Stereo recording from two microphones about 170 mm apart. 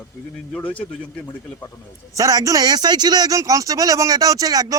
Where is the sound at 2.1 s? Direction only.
20° right (ahead or behind).